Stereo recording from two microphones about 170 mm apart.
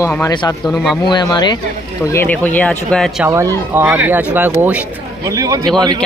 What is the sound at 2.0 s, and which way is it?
Speech, 10° left (ahead or behind).